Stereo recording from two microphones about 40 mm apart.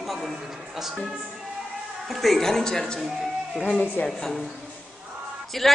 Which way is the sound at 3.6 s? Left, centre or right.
Left.